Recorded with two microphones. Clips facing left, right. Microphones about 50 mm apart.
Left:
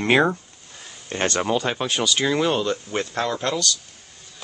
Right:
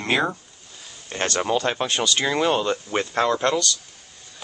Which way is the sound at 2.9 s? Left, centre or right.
Centre.